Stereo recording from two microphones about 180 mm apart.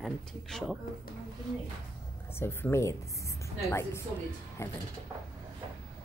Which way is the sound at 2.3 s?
15° left (ahead or behind).